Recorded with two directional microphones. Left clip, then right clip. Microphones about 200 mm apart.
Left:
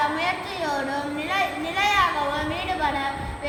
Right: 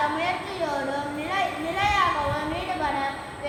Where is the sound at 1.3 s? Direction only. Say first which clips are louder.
Left 1 dB; 45° left (ahead or behind).